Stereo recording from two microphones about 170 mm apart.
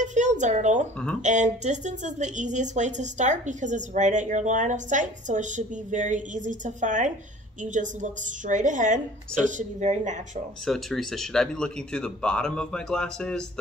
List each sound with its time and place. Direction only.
0.0 s a sound: 45° right (ahead or behind)
1.2 s a woman's voice: 45° right (ahead or behind)
10.6 s speech: centre (ahead or behind)